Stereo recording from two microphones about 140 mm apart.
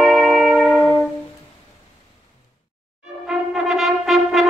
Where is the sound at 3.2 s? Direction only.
5° right (ahead or behind).